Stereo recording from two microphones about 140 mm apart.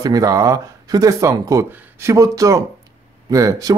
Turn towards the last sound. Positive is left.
turn(degrees=-25)  # may be behind; listen again after turning